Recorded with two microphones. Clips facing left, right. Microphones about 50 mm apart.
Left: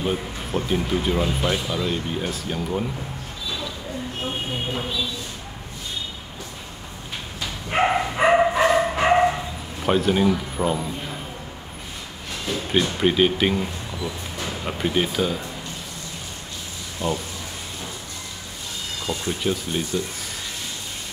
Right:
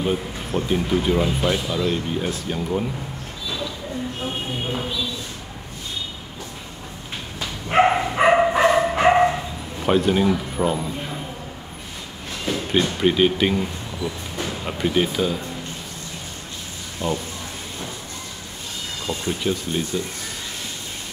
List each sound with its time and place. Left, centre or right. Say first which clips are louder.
0.0 s speech: right 2 dB; centre
7.3 s dog: right 5 dB; centre
8.9 s bow-wow: right 2 dB; centre
12.9 s speech: right 1 dB; centre
17.0 s speech: right 1 dB; centre
19.2 s speech: right 2 dB; centre